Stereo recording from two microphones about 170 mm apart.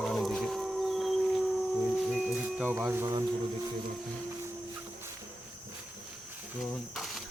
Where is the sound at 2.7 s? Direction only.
15° right (ahead or behind).